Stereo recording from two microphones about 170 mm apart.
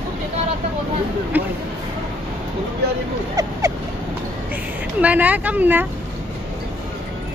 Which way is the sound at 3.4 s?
20° right (ahead or behind).